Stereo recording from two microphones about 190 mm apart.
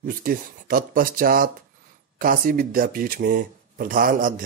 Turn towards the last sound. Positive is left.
turn(degrees=-45)  # may be behind; listen again after turning